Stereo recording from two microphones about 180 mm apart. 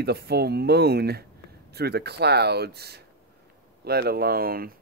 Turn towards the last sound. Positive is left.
turn(degrees=-55)  # may be behind; listen again after turning